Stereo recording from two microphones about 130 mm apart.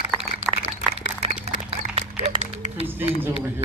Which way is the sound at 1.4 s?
50° right (ahead or behind).